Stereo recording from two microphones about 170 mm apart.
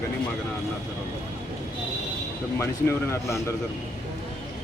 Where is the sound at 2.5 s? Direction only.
15° left (ahead or behind).